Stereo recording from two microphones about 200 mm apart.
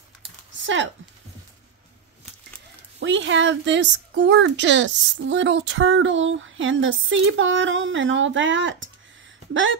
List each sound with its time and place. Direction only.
0.2 s typing: 70° right (ahead or behind)
3.0 s speech: 65° right (ahead or behind)